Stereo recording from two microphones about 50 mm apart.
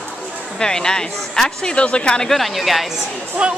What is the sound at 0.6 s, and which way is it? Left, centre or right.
Speech, centre.